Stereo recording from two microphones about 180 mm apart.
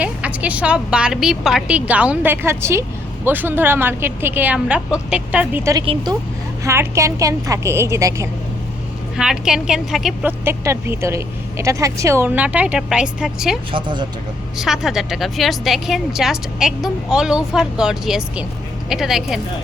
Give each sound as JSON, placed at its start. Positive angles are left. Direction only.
{"t": 0.0, "sound": "a woman's voice", "side_deg": -5}
{"t": 5.8, "sound": "speech", "side_deg": -30}
{"t": 6.7, "sound": "a woman's voice", "side_deg": -15}
{"t": 9.1, "sound": "a woman's voice", "side_deg": -5}
{"t": 10.4, "sound": "a woman's voice", "side_deg": -15}
{"t": 13.7, "sound": "speech", "side_deg": -25}
{"t": 14.6, "sound": "a woman's voice", "side_deg": 0}